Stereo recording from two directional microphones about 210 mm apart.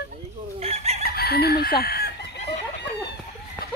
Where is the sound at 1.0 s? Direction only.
50° left (ahead or behind).